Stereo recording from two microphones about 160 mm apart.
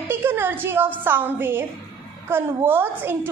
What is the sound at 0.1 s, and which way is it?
A woman's voice, 15° right (ahead or behind).